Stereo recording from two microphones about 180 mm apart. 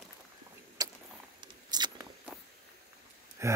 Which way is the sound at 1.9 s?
10° right (ahead or behind).